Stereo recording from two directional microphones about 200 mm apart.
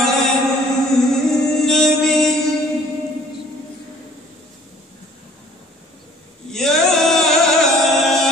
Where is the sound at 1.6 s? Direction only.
Centre (ahead or behind).